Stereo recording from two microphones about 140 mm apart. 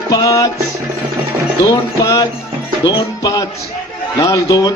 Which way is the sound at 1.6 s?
25° left (ahead or behind).